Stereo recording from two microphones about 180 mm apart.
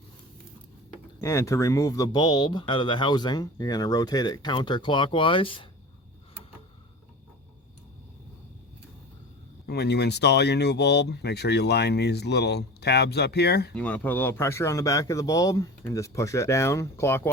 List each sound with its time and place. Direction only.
1.2 s speech: 15° left (ahead or behind)
9.6 s speech: 65° left (ahead or behind)
13.7 s speech: 10° left (ahead or behind)